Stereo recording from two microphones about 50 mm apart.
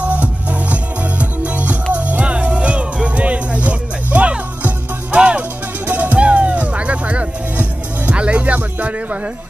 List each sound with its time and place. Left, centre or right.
0.0 s music: right